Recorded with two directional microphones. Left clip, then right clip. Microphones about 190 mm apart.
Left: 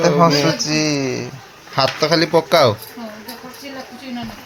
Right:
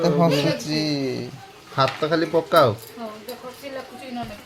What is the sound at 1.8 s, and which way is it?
Speech, 30° left (ahead or behind).